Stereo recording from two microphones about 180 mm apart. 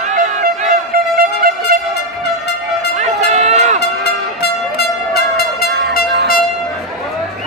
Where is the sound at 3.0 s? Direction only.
40° right (ahead or behind).